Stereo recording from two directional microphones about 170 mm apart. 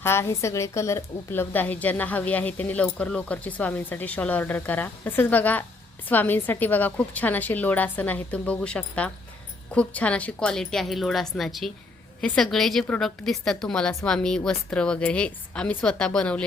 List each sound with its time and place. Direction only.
0.0 s a woman's voice: 15° left (ahead or behind)